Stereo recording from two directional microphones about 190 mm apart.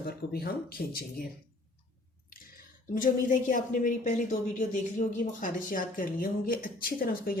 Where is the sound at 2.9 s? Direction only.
45° left (ahead or behind).